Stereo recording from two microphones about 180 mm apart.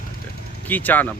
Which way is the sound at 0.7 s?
10° left (ahead or behind).